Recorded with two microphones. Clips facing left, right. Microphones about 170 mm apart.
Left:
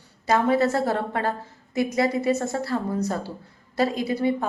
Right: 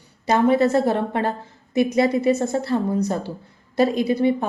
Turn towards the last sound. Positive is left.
turn(degrees=-20)  # may be behind; listen again after turning